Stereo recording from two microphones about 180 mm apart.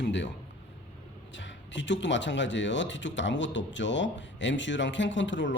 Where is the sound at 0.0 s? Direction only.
80° left.